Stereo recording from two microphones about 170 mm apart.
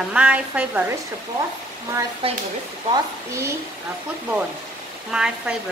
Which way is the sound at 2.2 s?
35° right (ahead or behind).